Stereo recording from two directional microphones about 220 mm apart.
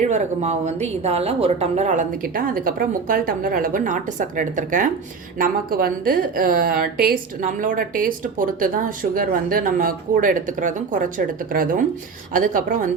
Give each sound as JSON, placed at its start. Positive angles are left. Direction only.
{"t": 0.0, "sound": "a woman's voice", "side_deg": -30}